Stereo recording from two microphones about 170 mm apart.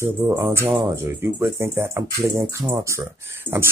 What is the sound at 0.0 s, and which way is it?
Speech, 15° right (ahead or behind).